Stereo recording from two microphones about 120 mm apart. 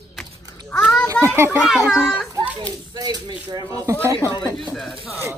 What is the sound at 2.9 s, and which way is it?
Speech, 35° right (ahead or behind).